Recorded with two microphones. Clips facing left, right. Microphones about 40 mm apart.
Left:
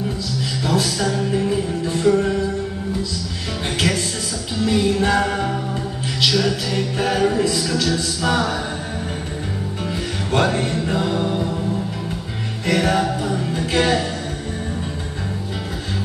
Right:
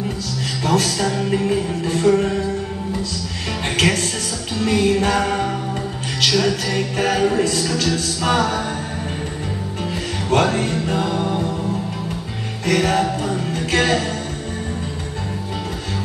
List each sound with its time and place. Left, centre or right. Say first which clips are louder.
0.7 s music: right 2 dB; right
0.9 s music: right 1 dB; right
3.7 s music: right 3 dB; right
12.6 s music: right 1 dB; left
13.5 s music: even; right